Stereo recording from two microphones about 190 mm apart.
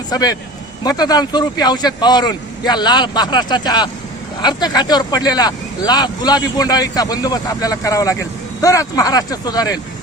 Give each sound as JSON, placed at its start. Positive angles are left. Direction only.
{"t": 0.1, "sound": "speech", "side_deg": 20}